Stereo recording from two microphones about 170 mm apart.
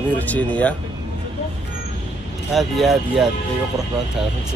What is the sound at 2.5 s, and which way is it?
Speech, centre (ahead or behind).